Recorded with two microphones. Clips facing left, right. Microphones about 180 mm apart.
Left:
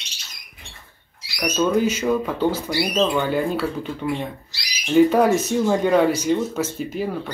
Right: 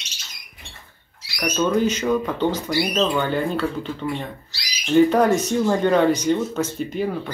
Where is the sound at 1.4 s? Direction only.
10° left (ahead or behind).